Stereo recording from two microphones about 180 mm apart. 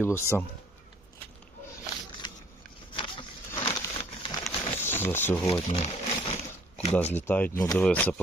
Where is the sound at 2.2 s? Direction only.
25° left (ahead or behind).